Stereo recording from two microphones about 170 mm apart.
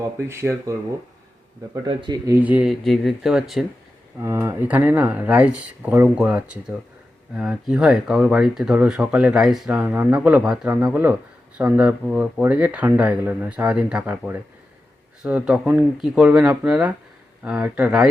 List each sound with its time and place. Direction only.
0.0 s speech: 15° right (ahead or behind); by 3.7 s centre (ahead or behind)
4.2 s speech: 15° right (ahead or behind)